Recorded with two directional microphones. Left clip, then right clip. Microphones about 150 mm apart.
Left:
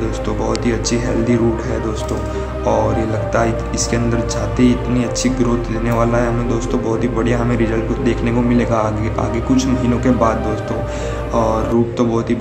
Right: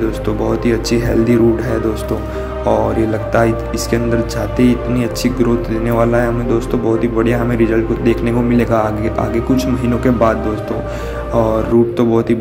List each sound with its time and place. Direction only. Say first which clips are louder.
0.7 s speech: right 3 dB; 25° right (ahead or behind)
3.3 s speech: right 3 dB; 25° right (ahead or behind)
11.3 s speech: right 3 dB; 25° right (ahead or behind)